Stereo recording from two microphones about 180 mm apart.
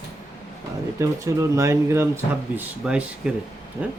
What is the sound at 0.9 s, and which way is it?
Speech, 15° right (ahead or behind).